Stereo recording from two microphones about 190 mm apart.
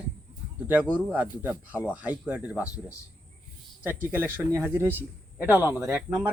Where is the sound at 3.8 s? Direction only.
10° right (ahead or behind).